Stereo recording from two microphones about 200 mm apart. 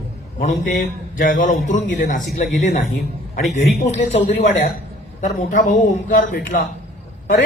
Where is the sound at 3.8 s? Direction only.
35° left (ahead or behind).